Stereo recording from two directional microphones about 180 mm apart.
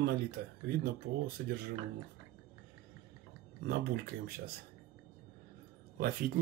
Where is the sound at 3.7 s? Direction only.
60° right (ahead or behind).